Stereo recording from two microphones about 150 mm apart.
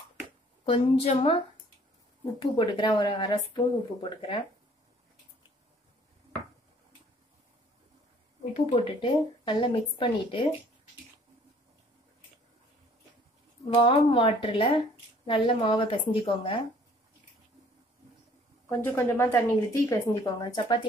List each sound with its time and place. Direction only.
0.7 s speech: 40° left (ahead or behind)
2.4 s speech: 30° left (ahead or behind)
8.5 s speech: 40° left (ahead or behind)
13.7 s speech: 35° left (ahead or behind)
18.7 s speech: 15° left (ahead or behind)